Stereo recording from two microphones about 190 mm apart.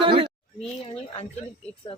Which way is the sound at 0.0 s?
25° right (ahead or behind).